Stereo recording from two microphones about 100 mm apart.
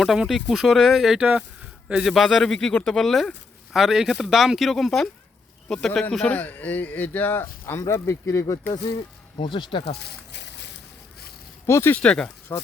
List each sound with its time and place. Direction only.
0.0 s speech: centre (ahead or behind); by 8.7 s 30° left (ahead or behind)
9.0 s speech: 55° left (ahead or behind)
11.6 s speech: 25° left (ahead or behind)
11.9 s speech: 10° left (ahead or behind)